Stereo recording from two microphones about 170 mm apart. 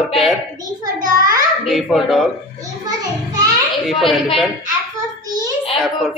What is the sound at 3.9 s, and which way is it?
Speech, centre (ahead or behind).